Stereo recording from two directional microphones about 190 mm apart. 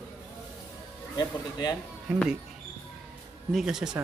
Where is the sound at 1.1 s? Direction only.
20° left (ahead or behind).